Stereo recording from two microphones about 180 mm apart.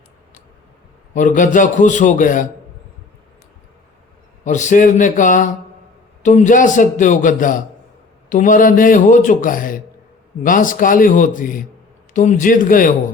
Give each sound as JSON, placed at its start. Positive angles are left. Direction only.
{"t": 1.1, "sound": "speech", "side_deg": 45}
{"t": 4.4, "sound": "speech", "side_deg": 40}